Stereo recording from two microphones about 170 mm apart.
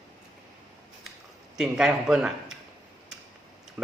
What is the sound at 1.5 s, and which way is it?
A man's voice, 5° right (ahead or behind).